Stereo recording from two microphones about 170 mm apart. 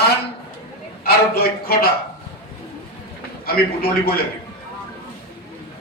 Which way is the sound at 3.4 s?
65° left (ahead or behind).